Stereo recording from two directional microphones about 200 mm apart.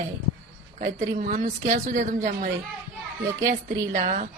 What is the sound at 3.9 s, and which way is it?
Speech, 40° right (ahead or behind).